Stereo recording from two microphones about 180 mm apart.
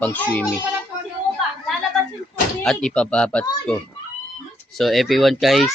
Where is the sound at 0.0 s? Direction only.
10° left (ahead or behind).